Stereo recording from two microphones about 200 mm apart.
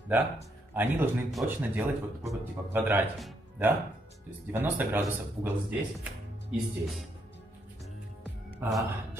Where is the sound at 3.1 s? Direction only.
Centre (ahead or behind).